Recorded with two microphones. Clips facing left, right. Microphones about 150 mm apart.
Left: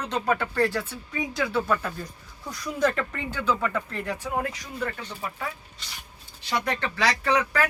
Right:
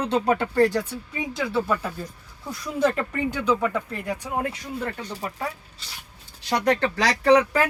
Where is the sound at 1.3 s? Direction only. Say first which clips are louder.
Right 1 dB; centre (ahead or behind).